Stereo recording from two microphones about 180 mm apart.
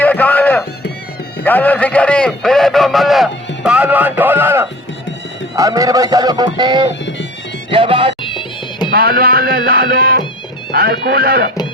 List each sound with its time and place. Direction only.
0.0 s music: 10° left (ahead or behind)
1.5 s a man's voice: 10° left (ahead or behind); by 8.1 s 30° right (ahead or behind)
8.2 s music: 30° left (ahead or behind)
8.9 s speech: 55° right (ahead or behind)